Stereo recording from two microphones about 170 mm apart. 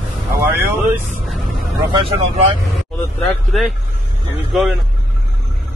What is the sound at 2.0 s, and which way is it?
Speech, 35° right (ahead or behind).